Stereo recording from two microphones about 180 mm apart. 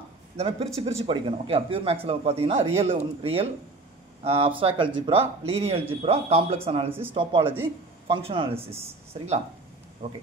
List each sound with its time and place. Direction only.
0.4 s speech: 35° right (ahead or behind)
6.9 s speech: 10° right (ahead or behind)
7.2 s speech: 30° right (ahead or behind)